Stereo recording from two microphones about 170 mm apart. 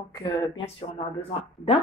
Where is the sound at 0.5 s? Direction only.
35° left (ahead or behind).